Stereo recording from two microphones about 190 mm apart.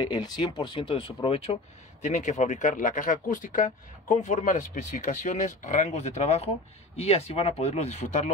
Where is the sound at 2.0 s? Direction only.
40° left (ahead or behind).